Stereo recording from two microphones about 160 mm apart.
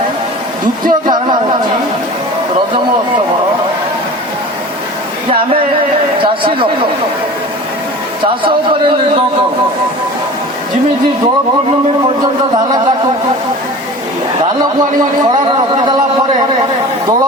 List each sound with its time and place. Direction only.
0.9 s music: 30° right (ahead or behind)
6.2 s a man's voice: 30° right (ahead or behind)